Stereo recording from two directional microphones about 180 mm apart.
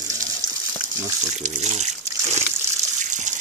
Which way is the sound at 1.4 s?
40° right (ahead or behind).